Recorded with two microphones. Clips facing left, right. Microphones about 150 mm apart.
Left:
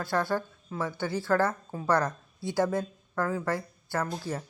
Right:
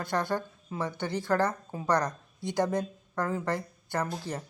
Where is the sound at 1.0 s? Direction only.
20° right (ahead or behind).